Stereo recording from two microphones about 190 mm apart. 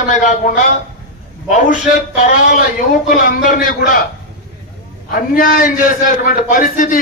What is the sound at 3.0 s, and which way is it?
Speech, 45° left (ahead or behind).